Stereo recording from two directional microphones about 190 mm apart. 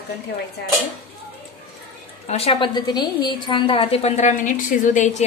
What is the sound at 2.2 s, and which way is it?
A woman's voice, 30° left (ahead or behind).